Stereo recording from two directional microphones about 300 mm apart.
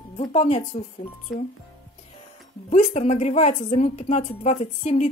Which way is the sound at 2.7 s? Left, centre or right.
Left.